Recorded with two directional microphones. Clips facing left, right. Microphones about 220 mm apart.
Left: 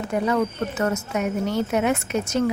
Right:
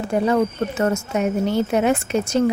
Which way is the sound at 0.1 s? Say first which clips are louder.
Right 4 dB; 30° right (ahead or behind).